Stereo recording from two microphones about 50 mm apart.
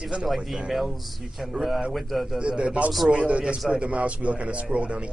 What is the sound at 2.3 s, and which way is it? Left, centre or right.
Speech, right.